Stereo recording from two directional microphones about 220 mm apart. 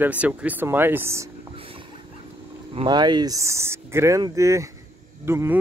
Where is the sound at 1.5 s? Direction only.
25° right (ahead or behind).